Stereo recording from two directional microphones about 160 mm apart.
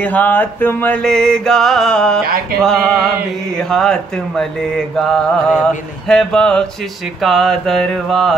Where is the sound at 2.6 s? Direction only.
Centre (ahead or behind).